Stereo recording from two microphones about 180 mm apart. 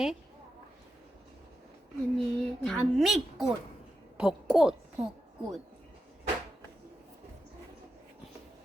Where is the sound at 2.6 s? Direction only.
5° left (ahead or behind).